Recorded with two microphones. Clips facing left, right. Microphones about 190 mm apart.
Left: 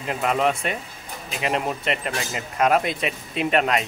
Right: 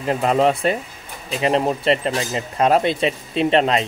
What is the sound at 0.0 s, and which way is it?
Speech, 35° right (ahead or behind).